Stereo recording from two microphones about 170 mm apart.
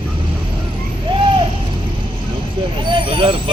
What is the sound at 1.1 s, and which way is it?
Owl, 30° right (ahead or behind).